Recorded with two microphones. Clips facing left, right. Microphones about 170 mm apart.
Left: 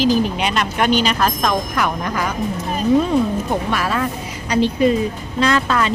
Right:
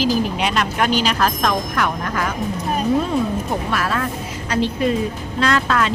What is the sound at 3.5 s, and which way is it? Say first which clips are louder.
Speech: left 2 dB; centre (ahead or behind).